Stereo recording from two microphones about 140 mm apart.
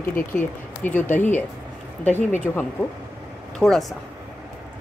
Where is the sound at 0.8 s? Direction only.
15° left (ahead or behind).